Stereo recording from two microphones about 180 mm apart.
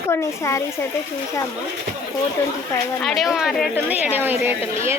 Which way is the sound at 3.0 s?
Centre (ahead or behind).